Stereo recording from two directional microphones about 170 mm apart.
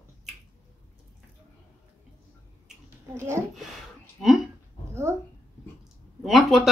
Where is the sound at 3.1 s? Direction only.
15° right (ahead or behind).